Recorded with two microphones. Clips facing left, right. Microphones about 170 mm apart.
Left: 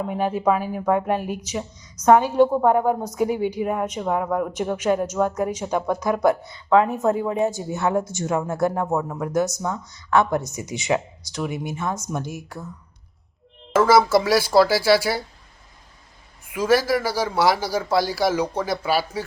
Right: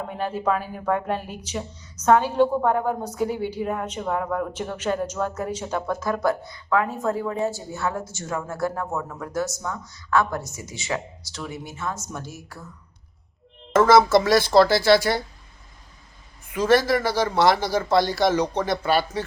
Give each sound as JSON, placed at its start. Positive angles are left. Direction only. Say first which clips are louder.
{"t": 0.1, "sound": "a woman's voice", "louder": "left 3 dB", "side_deg": 10}
{"t": 13.7, "sound": "a woman's voice", "louder": "right 1 dB", "side_deg": 10}
{"t": 16.5, "sound": "a woman's voice", "louder": "even", "side_deg": 10}